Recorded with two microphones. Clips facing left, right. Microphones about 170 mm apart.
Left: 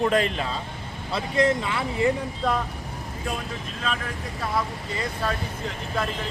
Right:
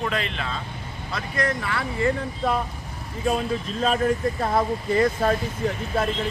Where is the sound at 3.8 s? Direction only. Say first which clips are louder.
Right 10 dB; 40° right (ahead or behind).